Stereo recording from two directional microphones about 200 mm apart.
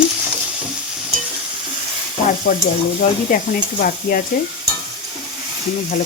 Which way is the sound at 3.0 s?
45° left (ahead or behind).